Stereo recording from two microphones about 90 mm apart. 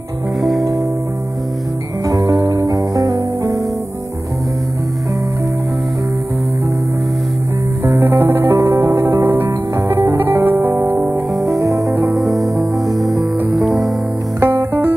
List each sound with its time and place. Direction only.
0.4 s music: centre (ahead or behind)
2.0 s music: 45° right (ahead or behind)
7.8 s music: 30° right (ahead or behind)
11.3 s music: centre (ahead or behind)
11.6 s music: 35° right (ahead or behind)
12.2 s music: centre (ahead or behind)
14.4 s music: 30° right (ahead or behind)